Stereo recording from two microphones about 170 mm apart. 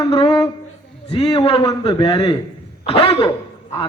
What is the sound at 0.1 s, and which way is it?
A man's voice, 30° left (ahead or behind).